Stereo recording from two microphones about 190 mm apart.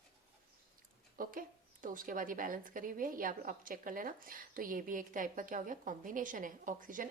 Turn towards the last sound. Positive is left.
turn(degrees=-45)  # may be behind; listen again after turning